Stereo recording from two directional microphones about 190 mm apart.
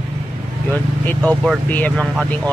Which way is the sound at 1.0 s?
5° left (ahead or behind).